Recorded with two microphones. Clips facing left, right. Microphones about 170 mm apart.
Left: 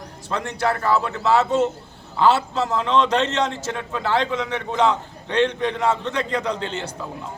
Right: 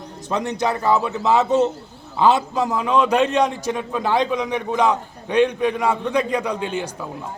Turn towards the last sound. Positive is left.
turn(degrees=-15)  # may be behind; listen again after turning